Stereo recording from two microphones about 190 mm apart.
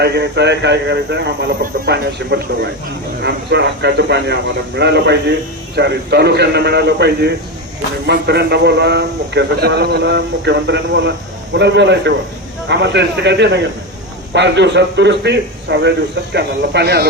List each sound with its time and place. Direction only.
0.0 s a man's voice: 60° right (ahead or behind)